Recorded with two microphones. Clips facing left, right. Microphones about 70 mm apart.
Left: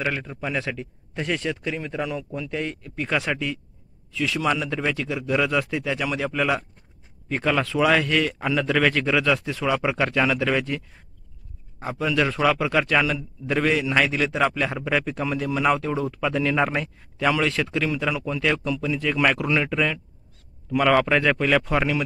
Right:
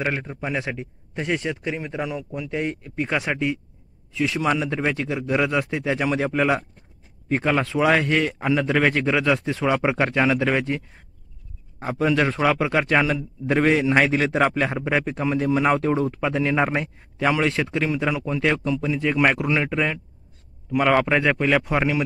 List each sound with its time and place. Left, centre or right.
0.0 s a man's voice: right
14.8 s a man's voice: right